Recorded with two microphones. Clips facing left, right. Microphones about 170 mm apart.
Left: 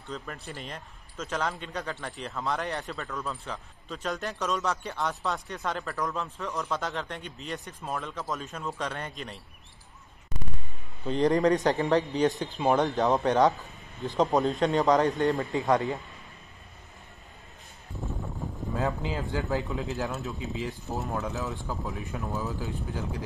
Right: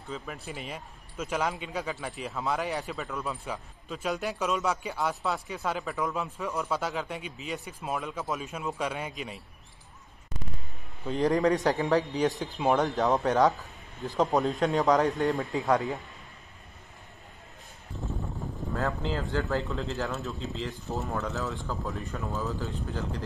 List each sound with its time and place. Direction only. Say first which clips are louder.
0.1 s speech: even; 5° right (ahead or behind)
11.1 s speech: left 1 dB; 5° right (ahead or behind)
18.8 s speech: even; 15° left (ahead or behind)
20.1 s speech: even; centre (ahead or behind)
20.5 s speech: left 1 dB; 15° left (ahead or behind)